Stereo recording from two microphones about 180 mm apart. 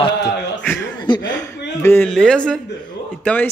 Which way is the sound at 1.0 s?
20° left (ahead or behind).